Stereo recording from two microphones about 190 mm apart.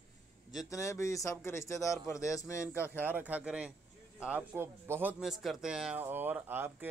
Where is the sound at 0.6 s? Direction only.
15° left (ahead or behind).